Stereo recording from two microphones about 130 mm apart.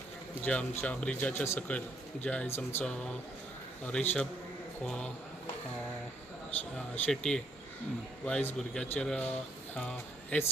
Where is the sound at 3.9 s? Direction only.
10° left (ahead or behind).